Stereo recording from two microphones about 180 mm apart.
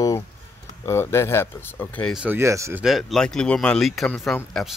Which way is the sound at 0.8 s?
15° left (ahead or behind).